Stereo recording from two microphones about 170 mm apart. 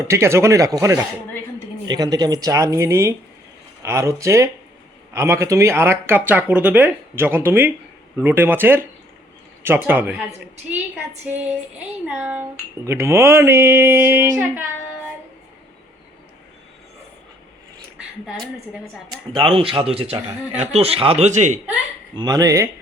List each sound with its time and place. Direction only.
0.0 s speech: 15° right (ahead or behind)
12.0 s speech: 10° right (ahead or behind)
17.9 s speech: 5° right (ahead or behind)
19.4 s a man's voice: 30° right (ahead or behind)
22.1 s speech: 25° right (ahead or behind)